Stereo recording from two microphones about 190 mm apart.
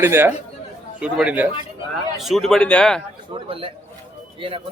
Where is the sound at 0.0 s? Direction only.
10° right (ahead or behind); by 3.0 s 5° left (ahead or behind).